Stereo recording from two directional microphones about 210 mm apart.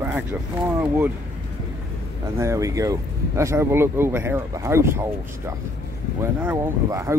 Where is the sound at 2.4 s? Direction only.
15° right (ahead or behind).